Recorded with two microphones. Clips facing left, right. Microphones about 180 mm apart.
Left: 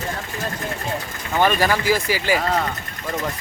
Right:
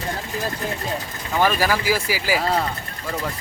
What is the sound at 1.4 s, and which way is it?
Speech, 5° right (ahead or behind).